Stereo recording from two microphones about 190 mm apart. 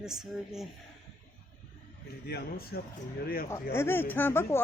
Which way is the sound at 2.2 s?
55° left (ahead or behind).